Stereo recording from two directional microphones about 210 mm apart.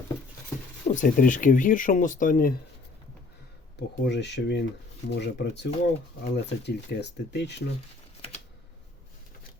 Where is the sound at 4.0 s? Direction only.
55° left (ahead or behind).